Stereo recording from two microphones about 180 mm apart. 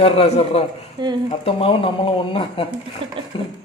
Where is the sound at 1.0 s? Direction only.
25° right (ahead or behind).